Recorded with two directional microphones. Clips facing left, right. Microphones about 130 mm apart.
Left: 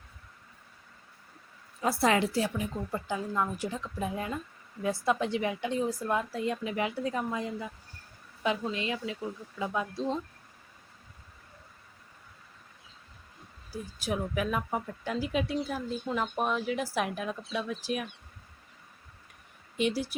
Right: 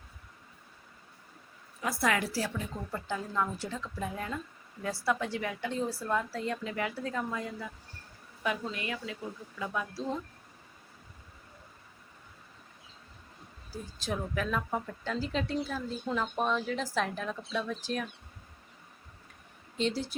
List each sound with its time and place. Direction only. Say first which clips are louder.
1.8 s speech: left 4 dB; 30° left (ahead or behind)
8.7 s speech: left 4 dB; 20° left (ahead or behind)
14.0 s speech: left 3 dB; 15° left (ahead or behind)
19.7 s speech: left 2 dB; 10° left (ahead or behind)